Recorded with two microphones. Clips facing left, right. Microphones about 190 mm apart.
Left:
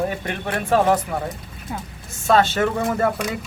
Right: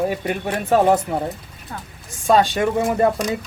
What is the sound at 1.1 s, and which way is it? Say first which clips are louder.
Speech: right 3 dB; 25° right (ahead or behind).